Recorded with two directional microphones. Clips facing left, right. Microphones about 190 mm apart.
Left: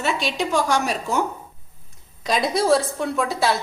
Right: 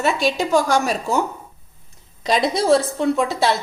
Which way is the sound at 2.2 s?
20° right (ahead or behind).